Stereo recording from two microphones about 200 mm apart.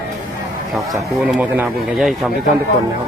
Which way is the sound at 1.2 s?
5° right (ahead or behind).